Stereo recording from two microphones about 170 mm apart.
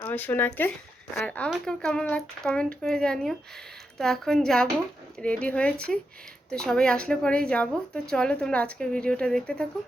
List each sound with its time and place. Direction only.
0.0 s speech: 10° left (ahead or behind)